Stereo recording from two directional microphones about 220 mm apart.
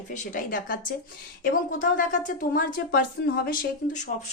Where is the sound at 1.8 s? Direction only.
40° left (ahead or behind).